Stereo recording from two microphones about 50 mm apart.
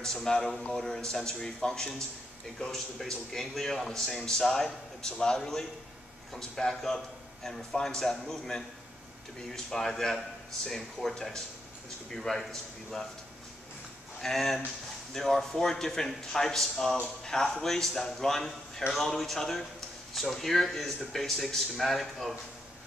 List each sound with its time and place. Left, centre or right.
0.0 s a man's voice: centre
14.2 s a man's voice: centre